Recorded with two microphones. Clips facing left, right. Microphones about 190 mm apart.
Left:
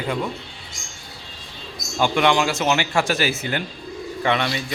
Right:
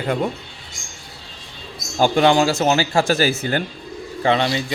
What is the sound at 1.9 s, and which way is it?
Speech, 35° right (ahead or behind).